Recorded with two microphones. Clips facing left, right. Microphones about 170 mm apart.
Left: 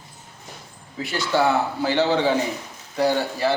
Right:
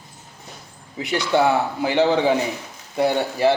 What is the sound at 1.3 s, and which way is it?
Speech, 15° right (ahead or behind).